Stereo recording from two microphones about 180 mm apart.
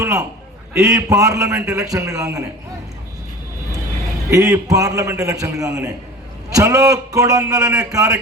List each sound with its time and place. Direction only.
0.0 s a sound: 15° right (ahead or behind)
0.7 s a man's voice: 10° right (ahead or behind)
4.3 s a man's voice: 15° right (ahead or behind)